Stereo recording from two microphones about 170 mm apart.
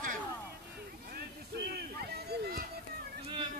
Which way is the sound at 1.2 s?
70° right (ahead or behind).